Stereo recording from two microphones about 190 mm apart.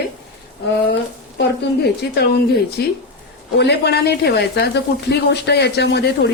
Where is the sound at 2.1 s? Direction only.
60° left (ahead or behind).